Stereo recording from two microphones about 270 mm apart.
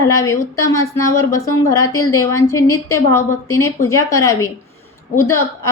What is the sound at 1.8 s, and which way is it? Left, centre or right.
Speech, left.